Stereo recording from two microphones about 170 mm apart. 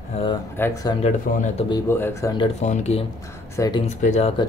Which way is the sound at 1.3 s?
60° left (ahead or behind).